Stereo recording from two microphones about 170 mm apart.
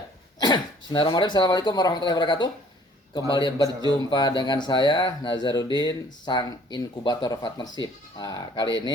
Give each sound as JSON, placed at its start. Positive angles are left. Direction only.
{"t": 0.3, "sound": "speech", "side_deg": 25}